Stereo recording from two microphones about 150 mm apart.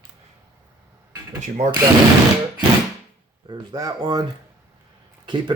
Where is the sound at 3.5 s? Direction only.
25° right (ahead or behind).